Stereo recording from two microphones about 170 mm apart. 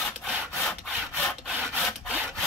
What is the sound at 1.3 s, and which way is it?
Sawing, centre (ahead or behind).